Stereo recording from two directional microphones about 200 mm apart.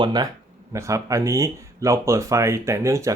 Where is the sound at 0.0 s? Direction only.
20° right (ahead or behind).